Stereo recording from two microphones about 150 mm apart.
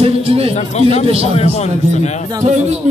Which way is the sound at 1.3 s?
45° left (ahead or behind).